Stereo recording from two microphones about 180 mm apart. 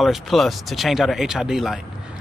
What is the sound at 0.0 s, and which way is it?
Speech, centre (ahead or behind).